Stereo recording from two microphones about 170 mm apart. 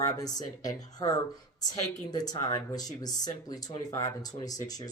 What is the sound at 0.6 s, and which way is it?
Speech, 20° left (ahead or behind).